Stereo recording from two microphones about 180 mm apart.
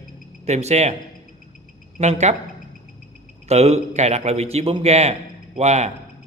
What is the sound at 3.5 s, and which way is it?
A man's voice, 35° right (ahead or behind).